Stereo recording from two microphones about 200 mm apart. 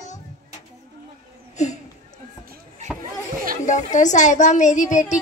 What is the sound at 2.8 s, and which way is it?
Chatter, 35° right (ahead or behind).